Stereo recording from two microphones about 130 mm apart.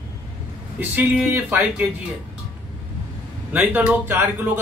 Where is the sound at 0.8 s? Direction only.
15° right (ahead or behind).